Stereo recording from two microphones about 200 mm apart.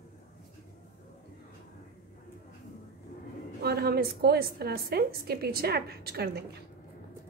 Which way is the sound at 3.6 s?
50° right (ahead or behind).